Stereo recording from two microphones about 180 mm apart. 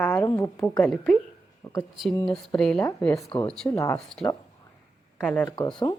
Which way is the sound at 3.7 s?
15° left (ahead or behind).